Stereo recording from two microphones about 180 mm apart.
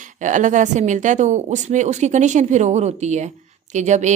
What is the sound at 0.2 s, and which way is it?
A woman's voice, 45° right (ahead or behind).